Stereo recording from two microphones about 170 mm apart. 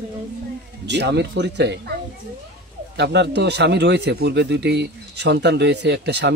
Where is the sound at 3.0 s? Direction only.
85° right.